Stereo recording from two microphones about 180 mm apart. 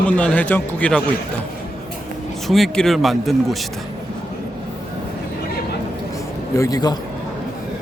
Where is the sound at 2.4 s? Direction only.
Centre (ahead or behind).